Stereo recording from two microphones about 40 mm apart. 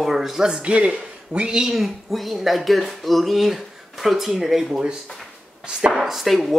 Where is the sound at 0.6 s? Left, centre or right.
Right.